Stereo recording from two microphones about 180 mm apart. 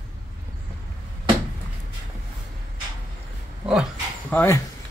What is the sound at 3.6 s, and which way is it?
Dog, centre (ahead or behind).